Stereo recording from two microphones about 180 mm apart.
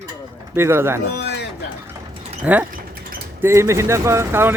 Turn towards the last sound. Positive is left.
turn(degrees=-15)  # may be behind; listen again after turning